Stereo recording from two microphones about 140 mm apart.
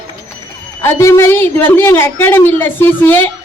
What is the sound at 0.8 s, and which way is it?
A woman's voice, 20° left (ahead or behind).